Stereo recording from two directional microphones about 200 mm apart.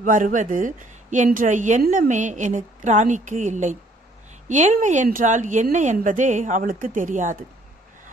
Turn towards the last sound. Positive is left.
turn(degrees=-40)  # may be behind; listen again after turning